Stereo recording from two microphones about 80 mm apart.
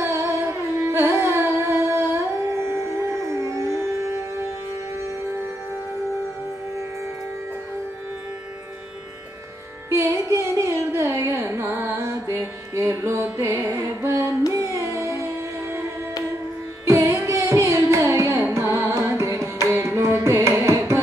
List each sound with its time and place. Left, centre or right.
0.0 s music: right
0.7 s carnatic music: right
10.3 s carnatic music: right
16.8 s music: right
18.4 s carnatic music: right